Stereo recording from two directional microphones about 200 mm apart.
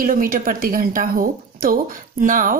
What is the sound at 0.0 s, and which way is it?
Speech, 45° right (ahead or behind).